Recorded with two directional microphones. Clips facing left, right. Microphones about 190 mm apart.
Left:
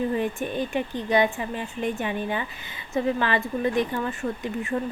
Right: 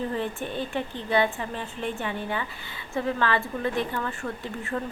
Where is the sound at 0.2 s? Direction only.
15° left (ahead or behind).